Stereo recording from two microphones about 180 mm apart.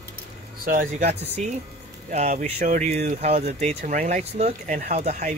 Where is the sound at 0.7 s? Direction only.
45° right (ahead or behind).